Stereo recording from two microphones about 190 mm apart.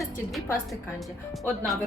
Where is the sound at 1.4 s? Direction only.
Centre (ahead or behind).